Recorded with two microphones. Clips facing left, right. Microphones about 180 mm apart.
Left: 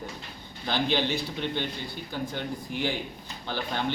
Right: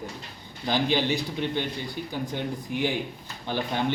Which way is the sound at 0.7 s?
10° right (ahead or behind).